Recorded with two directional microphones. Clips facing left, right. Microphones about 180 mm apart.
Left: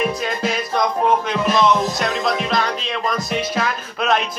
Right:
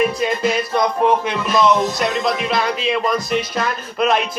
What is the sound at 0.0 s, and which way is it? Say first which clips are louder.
Music: right 4 dB; centre (ahead or behind).